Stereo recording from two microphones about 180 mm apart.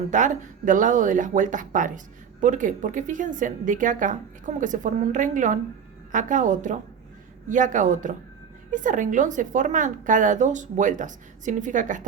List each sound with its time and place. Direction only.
0.1 s speech: 45° right (ahead or behind)